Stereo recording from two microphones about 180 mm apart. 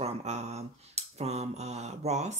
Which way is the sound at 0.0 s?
40° right (ahead or behind).